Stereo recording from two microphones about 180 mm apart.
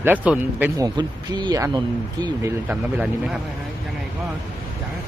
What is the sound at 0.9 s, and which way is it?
Speech, 25° right (ahead or behind).